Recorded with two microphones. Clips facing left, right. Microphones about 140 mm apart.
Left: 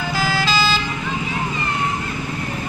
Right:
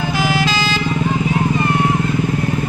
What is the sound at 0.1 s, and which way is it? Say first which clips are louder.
Vehicle: right 2 dB; 20° right (ahead or behind).